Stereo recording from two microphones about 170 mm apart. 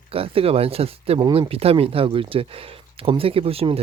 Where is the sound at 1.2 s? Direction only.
25° right (ahead or behind).